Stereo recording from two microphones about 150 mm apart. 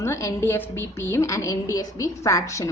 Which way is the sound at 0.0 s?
20° left (ahead or behind).